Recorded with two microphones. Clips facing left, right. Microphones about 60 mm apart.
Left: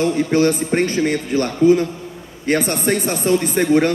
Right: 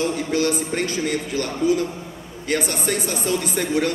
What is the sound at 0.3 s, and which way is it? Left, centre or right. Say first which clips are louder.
Speech: left 6 dB; left.